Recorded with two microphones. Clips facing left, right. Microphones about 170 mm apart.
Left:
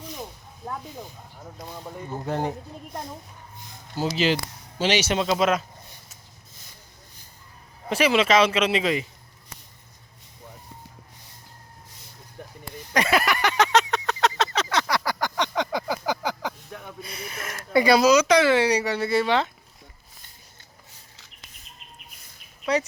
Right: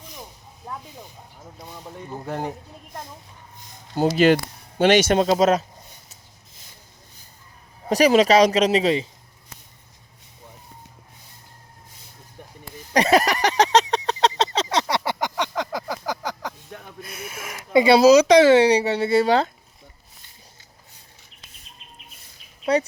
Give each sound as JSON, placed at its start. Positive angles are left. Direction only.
{"t": 2.1, "sound": "speech", "side_deg": 5}
{"t": 3.9, "sound": "speech", "side_deg": -55}
{"t": 7.9, "sound": "speech", "side_deg": -40}
{"t": 12.9, "sound": "a sound", "side_deg": -35}
{"t": 15.4, "sound": "a sound", "side_deg": 0}
{"t": 17.7, "sound": "speech", "side_deg": -30}
{"t": 22.6, "sound": "speech", "side_deg": -30}